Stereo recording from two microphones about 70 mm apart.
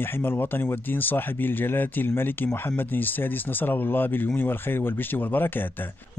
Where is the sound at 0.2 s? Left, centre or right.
Left.